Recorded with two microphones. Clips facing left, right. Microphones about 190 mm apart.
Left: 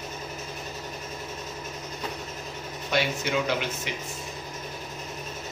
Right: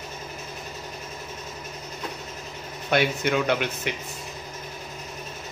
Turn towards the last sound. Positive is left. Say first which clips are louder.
# right 3 dB
turn(degrees=-60)  # may be behind; listen again after turning